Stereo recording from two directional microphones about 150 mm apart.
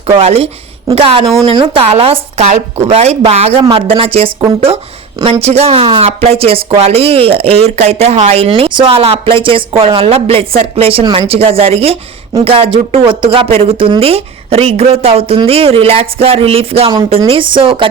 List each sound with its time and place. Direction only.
0.2 s speech: 45° right (ahead or behind)
1.2 s speech: 25° right (ahead or behind)
1.5 s speech: 35° right (ahead or behind)